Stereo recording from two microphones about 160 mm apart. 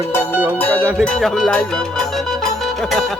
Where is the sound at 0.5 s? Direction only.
10° left (ahead or behind).